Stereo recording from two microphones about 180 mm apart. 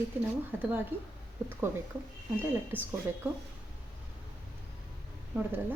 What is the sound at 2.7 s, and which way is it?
Speech, 10° right (ahead or behind).